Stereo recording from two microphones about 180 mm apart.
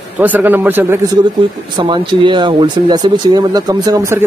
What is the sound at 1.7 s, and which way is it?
Speech, 25° right (ahead or behind).